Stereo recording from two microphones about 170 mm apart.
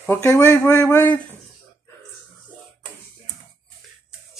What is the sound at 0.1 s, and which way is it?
Speech, 15° left (ahead or behind).